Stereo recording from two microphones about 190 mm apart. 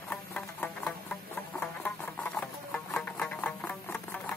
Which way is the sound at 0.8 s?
5° left (ahead or behind).